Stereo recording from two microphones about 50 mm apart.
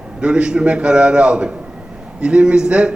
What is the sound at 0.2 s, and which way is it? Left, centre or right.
A man's voice, right.